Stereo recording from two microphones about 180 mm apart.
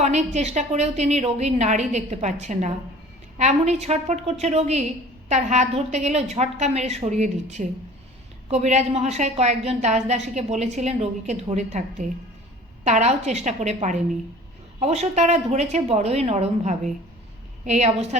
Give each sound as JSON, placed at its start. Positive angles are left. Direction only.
{"t": 0.0, "sound": "a woman's voice", "side_deg": -40}